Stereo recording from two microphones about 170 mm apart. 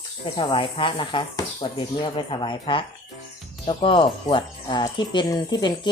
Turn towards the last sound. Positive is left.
turn(degrees=25)  # may be behind; listen again after turning